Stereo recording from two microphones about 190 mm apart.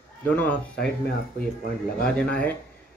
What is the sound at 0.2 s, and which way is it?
Speech, 10° left (ahead or behind).